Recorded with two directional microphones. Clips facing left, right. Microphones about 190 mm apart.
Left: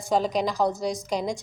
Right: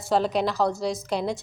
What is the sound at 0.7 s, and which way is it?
Speech, centre (ahead or behind).